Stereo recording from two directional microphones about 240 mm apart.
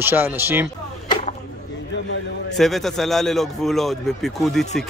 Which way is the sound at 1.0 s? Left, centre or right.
Left.